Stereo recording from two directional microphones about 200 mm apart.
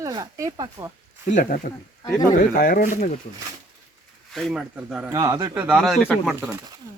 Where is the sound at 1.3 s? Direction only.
45° left (ahead or behind).